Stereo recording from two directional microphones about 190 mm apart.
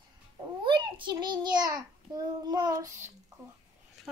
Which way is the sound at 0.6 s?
25° right (ahead or behind).